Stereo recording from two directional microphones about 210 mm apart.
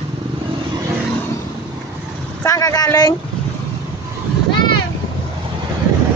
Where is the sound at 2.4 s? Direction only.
15° left (ahead or behind).